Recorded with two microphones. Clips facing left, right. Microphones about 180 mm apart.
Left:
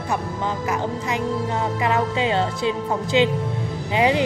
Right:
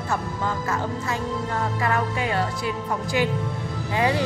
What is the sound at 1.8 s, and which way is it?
Speech, 20° left (ahead or behind).